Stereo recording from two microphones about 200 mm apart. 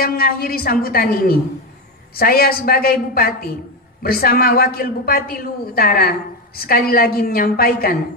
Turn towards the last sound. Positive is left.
turn(degrees=50)  # may be behind; listen again after turning